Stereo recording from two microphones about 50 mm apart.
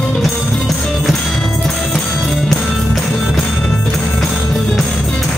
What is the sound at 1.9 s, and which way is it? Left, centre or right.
Music, centre.